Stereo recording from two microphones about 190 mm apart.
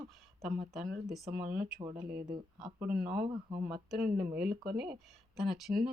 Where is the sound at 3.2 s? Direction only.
25° right (ahead or behind).